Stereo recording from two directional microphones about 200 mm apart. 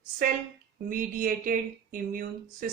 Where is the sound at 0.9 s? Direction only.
45° right (ahead or behind).